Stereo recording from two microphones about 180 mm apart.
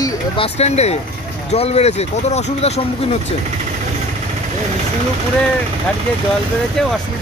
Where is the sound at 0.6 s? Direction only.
35° left (ahead or behind).